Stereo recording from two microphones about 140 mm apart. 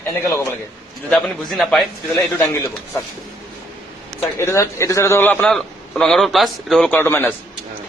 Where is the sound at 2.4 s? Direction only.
15° left (ahead or behind).